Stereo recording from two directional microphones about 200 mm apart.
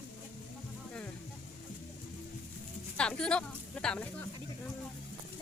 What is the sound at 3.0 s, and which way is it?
A woman's voice, 5° left (ahead or behind).